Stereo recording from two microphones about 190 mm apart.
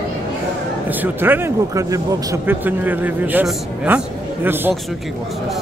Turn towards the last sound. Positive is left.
turn(degrees=-10)  # may be behind; listen again after turning